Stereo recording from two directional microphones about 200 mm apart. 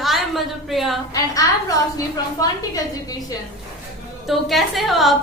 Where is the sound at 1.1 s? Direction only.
20° left (ahead or behind).